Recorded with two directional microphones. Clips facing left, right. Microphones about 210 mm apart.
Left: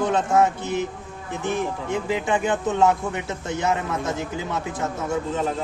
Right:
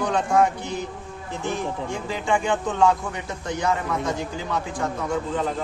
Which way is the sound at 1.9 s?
20° left (ahead or behind).